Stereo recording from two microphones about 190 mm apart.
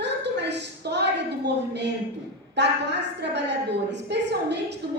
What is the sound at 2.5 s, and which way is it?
A woman's voice, 65° right (ahead or behind).